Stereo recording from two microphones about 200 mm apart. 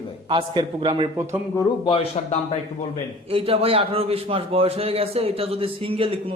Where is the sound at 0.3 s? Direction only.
25° right (ahead or behind).